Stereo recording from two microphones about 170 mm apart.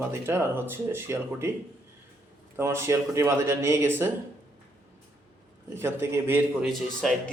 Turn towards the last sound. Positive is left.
turn(degrees=0)  # may be behind; listen again after turning